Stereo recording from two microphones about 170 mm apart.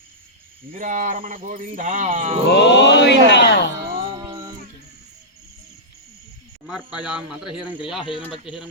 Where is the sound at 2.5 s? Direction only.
85° left.